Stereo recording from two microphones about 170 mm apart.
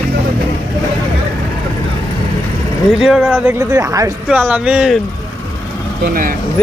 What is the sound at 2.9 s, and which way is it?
Speech, 5° right (ahead or behind).